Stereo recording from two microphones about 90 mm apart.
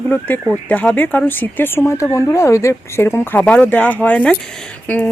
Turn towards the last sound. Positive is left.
turn(degrees=15)  # may be behind; listen again after turning